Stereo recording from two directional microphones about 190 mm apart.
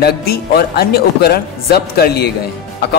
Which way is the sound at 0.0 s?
55° left (ahead or behind).